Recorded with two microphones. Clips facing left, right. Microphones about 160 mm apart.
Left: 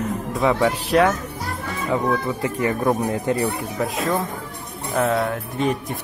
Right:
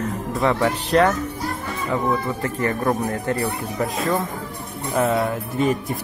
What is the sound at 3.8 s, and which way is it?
Speech, centre (ahead or behind).